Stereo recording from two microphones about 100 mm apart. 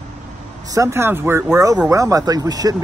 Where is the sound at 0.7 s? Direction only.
30° right (ahead or behind).